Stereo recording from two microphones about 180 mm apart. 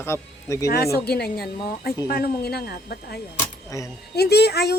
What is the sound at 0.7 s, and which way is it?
A woman's voice, 60° left (ahead or behind).